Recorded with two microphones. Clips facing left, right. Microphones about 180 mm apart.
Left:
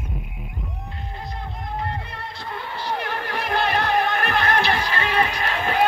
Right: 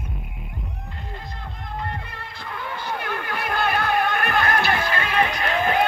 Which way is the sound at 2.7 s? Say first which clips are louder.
Left 2 dB; 50° right (ahead or behind).